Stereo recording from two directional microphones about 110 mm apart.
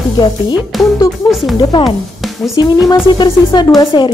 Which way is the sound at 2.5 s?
35° left (ahead or behind).